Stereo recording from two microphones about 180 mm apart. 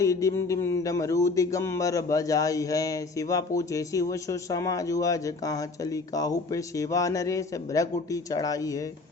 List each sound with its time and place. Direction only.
0.0 s speech: 15° left (ahead or behind)